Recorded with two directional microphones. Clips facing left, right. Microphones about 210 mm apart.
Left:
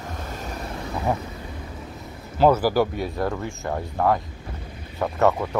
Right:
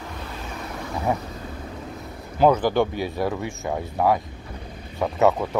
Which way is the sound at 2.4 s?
5° left (ahead or behind).